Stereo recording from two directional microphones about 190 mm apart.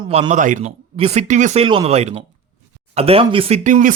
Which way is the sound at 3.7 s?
40° right (ahead or behind).